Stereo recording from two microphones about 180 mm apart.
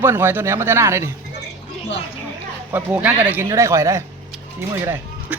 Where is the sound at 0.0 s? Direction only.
15° right (ahead or behind).